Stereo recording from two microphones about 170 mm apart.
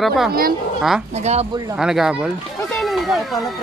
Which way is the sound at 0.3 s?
60° right (ahead or behind).